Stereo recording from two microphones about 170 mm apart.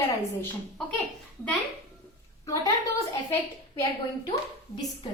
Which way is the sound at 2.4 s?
20° left (ahead or behind).